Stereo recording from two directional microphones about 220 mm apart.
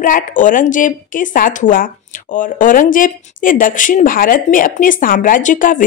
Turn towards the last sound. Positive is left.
turn(degrees=35)  # may be behind; listen again after turning